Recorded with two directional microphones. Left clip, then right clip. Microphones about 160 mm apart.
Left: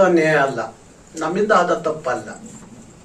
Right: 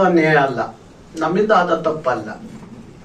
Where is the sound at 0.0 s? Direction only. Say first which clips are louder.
Right 1 dB; 30° right (ahead or behind).